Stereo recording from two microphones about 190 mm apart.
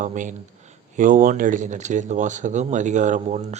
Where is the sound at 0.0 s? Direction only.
40° right (ahead or behind).